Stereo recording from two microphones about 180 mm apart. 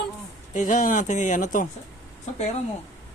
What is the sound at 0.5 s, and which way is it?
Speech, 45° left (ahead or behind).